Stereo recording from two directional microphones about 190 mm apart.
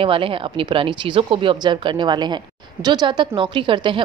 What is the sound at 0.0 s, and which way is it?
A woman's voice, 30° right (ahead or behind).